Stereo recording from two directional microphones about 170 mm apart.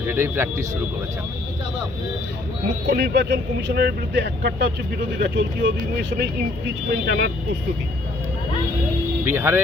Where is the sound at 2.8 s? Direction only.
75° right (ahead or behind).